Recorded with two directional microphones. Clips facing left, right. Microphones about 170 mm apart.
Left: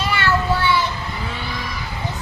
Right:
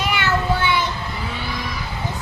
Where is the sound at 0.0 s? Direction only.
15° right (ahead or behind).